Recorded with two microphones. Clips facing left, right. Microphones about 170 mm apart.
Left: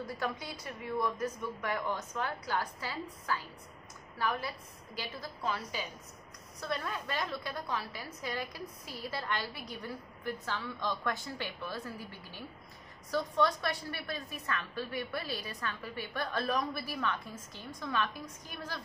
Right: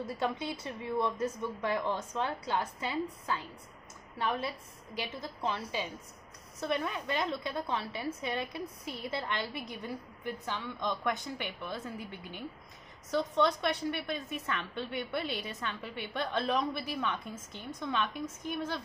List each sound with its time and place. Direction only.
0.0 s a woman's voice: 25° right (ahead or behind)